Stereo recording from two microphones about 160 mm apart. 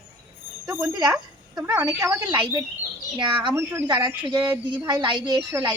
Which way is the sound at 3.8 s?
25° right (ahead or behind).